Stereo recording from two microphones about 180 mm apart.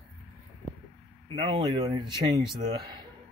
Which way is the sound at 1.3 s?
30° right (ahead or behind).